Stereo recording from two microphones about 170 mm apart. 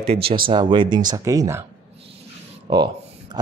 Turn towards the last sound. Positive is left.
turn(degrees=-25)  # may be behind; listen again after turning